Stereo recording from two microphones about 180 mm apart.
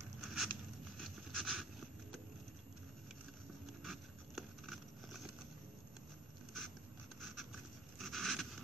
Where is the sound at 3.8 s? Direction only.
Centre (ahead or behind).